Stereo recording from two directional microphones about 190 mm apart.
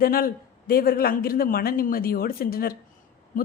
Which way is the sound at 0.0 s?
50° left (ahead or behind).